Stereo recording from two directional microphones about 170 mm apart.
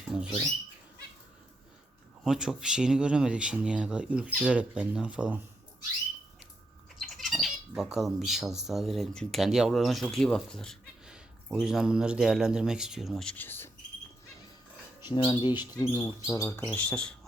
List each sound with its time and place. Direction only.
0.0 s speech: 5° right (ahead or behind)
2.2 s speech: 5° right (ahead or behind)
7.0 s speech: centre (ahead or behind)
15.0 s speech: 25° left (ahead or behind); by 17.2 s 5° left (ahead or behind)